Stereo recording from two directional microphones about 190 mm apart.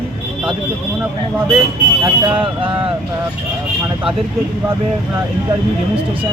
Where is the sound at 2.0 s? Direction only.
10° right (ahead or behind).